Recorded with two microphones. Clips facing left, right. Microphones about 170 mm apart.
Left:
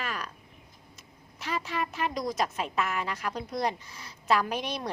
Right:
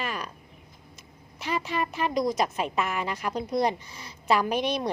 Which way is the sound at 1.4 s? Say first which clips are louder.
Right 3 dB; 15° right (ahead or behind).